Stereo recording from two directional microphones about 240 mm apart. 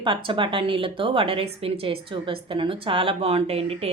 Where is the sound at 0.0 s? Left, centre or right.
Centre.